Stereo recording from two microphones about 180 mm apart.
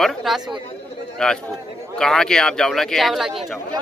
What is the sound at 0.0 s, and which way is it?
Speech, centre (ahead or behind).